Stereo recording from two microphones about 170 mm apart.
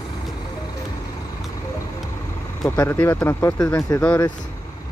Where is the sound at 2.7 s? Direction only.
15° left (ahead or behind).